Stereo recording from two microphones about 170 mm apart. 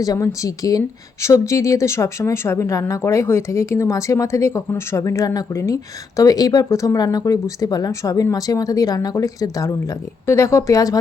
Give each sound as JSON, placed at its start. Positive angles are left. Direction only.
{"t": 0.0, "sound": "a woman's voice", "side_deg": 20}